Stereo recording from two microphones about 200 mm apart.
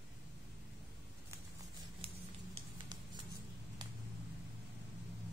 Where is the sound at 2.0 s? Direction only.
30° right (ahead or behind).